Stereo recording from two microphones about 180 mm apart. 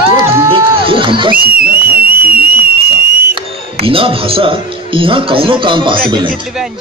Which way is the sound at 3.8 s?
30° right (ahead or behind).